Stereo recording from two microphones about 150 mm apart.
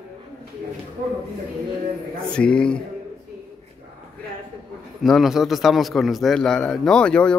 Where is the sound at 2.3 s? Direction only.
5° left (ahead or behind).